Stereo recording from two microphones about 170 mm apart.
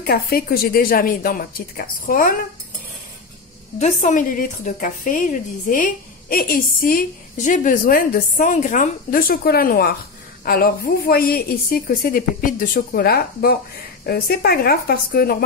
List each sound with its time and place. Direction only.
0.0 s a woman's voice: 65° left (ahead or behind)
3.8 s a woman's voice: 50° left (ahead or behind)